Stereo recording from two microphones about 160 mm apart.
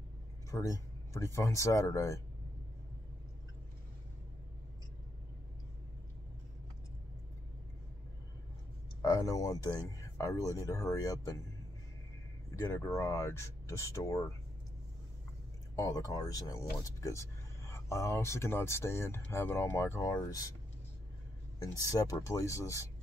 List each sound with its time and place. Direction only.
0.5 s speech: 20° left (ahead or behind)
9.0 s speech: 20° left (ahead or behind)
12.5 s speech: 20° left (ahead or behind)
15.7 s speech: 20° left (ahead or behind)
21.5 s speech: 20° left (ahead or behind)